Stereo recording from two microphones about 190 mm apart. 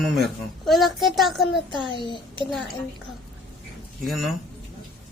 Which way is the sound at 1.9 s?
25° left (ahead or behind).